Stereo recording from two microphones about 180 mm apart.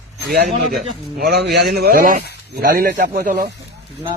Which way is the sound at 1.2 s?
60° right (ahead or behind).